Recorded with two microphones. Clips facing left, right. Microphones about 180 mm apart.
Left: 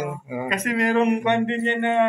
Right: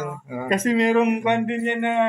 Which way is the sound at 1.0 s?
10° right (ahead or behind).